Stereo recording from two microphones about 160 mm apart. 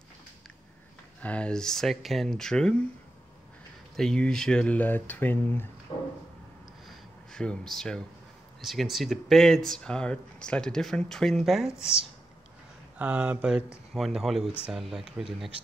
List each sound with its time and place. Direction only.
1.2 s speech: 5° left (ahead or behind)
3.9 s speech: 5° left (ahead or behind)
5.9 s a sound: 35° left (ahead or behind)
7.3 s speech: 5° left (ahead or behind)
12.9 s speech: 5° right (ahead or behind)